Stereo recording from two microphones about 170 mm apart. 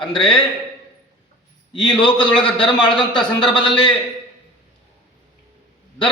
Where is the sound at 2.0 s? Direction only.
25° left (ahead or behind).